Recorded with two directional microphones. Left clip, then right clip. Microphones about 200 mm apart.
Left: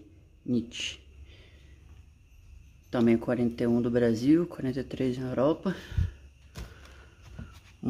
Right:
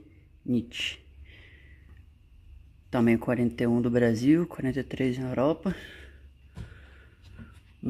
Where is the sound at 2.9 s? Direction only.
20° right (ahead or behind).